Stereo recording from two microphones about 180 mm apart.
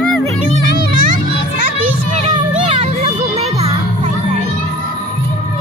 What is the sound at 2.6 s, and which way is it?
Music, 35° right (ahead or behind).